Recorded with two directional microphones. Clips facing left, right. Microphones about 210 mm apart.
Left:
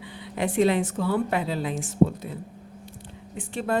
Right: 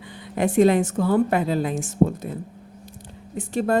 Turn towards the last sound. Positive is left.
turn(degrees=-40)  # may be behind; listen again after turning